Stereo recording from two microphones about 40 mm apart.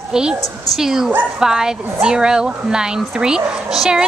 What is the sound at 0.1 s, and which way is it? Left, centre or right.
A woman's voice, centre.